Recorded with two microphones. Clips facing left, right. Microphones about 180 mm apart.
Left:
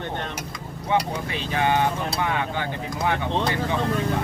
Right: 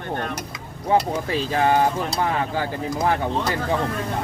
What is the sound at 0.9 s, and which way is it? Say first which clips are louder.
Speech: right 4 dB; 35° right (ahead or behind).